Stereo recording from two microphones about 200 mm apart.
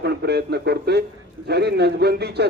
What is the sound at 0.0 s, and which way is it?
A man's voice, 55° right (ahead or behind).